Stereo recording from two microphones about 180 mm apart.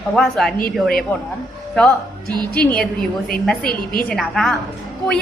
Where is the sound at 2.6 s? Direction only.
5° left (ahead or behind).